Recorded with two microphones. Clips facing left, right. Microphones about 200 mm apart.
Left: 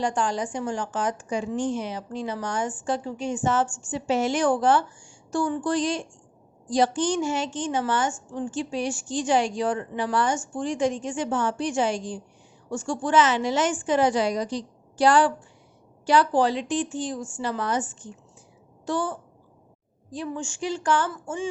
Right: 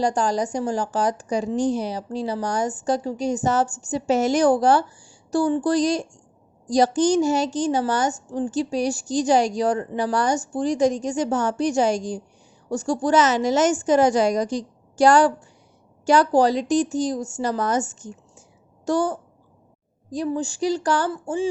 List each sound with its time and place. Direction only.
0.0 s a woman's voice: 40° right (ahead or behind)